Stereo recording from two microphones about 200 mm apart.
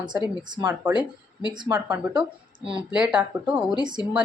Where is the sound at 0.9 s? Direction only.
20° left (ahead or behind).